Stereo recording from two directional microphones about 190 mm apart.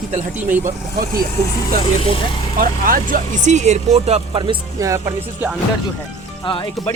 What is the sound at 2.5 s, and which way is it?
Speech, 45° right (ahead or behind).